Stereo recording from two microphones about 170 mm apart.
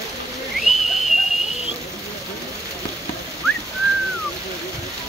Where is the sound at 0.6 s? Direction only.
Centre (ahead or behind).